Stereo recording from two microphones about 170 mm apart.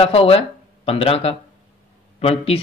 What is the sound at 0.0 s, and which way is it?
Speech, 35° left (ahead or behind).